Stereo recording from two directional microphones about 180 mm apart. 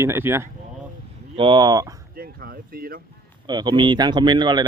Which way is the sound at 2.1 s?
55° right (ahead or behind).